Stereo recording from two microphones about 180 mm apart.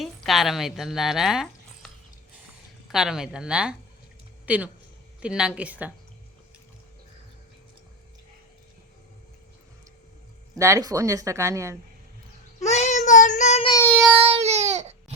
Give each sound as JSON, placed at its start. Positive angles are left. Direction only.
{"t": 0.0, "sound": "a woman's voice", "side_deg": 0}
{"t": 2.9, "sound": "a woman's voice", "side_deg": -5}
{"t": 10.6, "sound": "speech", "side_deg": -20}
{"t": 12.5, "sound": "child singing", "side_deg": 40}
{"t": 13.8, "sound": "child singing", "side_deg": 5}
{"t": 14.2, "sound": "baby cry", "side_deg": -35}